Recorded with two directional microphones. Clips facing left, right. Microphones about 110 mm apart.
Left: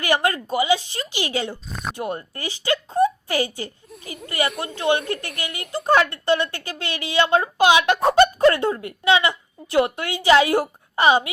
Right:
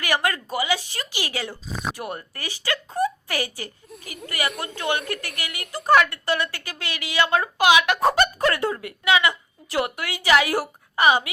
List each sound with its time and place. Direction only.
0.0 s speech: 30° left (ahead or behind)
1.6 s speech: centre (ahead or behind)
2.0 s speech: 25° left (ahead or behind)